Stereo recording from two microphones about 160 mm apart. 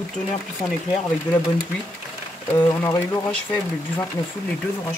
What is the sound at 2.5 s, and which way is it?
Speech, 20° left (ahead or behind).